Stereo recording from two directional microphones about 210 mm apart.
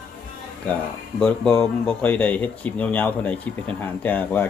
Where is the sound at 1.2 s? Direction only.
5° left (ahead or behind).